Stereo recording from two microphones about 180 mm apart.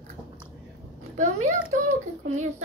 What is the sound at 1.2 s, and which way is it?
Speech, 40° right (ahead or behind).